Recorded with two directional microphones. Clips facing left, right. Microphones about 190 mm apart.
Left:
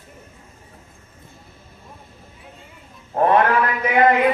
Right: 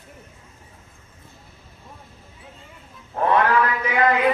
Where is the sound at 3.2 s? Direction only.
25° left (ahead or behind).